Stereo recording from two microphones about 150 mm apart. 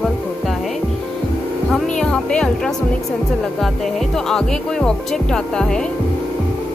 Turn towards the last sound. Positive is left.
turn(degrees=5)  # may be behind; listen again after turning